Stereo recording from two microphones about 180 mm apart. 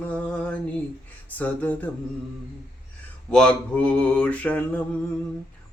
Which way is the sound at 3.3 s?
5° left (ahead or behind).